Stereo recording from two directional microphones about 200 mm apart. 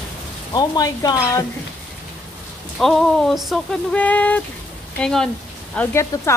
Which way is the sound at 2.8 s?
Centre (ahead or behind).